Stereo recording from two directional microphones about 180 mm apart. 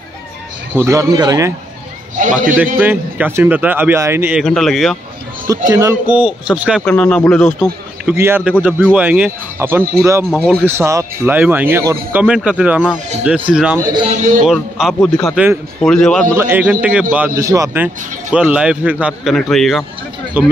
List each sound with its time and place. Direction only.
0.7 s speech: 15° right (ahead or behind)
2.1 s a man's voice: 45° right (ahead or behind)
2.5 s speech: 10° right (ahead or behind)
4.5 s a man's voice: centre (ahead or behind)
5.7 s speech: 15° right (ahead or behind)
6.8 s a man's voice: 5° left (ahead or behind)
8.1 s speech: 10° right (ahead or behind)
10.3 s a man's voice: 5° left (ahead or behind)
10.6 s a man's voice: 15° right (ahead or behind)
13.7 s a man's voice: 20° right (ahead or behind)
14.1 s a man's voice: 45° right (ahead or behind)
14.4 s a man's voice: centre (ahead or behind)
16.3 s speech: 10° right (ahead or behind)